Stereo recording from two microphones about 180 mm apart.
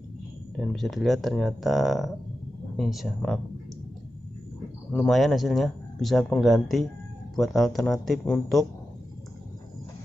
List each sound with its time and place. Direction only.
0.6 s speech: centre (ahead or behind)
4.9 s speech: centre (ahead or behind)